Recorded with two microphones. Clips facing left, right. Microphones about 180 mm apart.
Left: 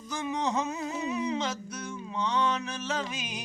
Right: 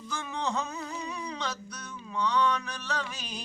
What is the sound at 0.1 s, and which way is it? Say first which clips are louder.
Humming: left 3 dB; 20° left (ahead or behind).